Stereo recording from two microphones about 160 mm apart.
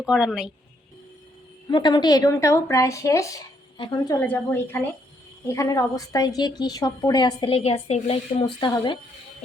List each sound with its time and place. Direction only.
0.0 s a woman's voice: 5° right (ahead or behind)
1.6 s a woman's voice: 25° left (ahead or behind)
4.2 s a woman's voice: 10° left (ahead or behind); by 9.0 s 30° left (ahead or behind)